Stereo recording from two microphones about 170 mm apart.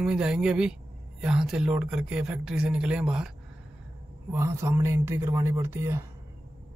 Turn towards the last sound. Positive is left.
turn(degrees=-15)  # may be behind; listen again after turning